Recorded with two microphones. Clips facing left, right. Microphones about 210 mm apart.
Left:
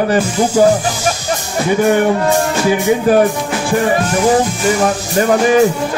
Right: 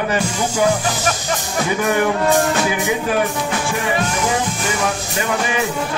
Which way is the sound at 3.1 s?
40° left (ahead or behind).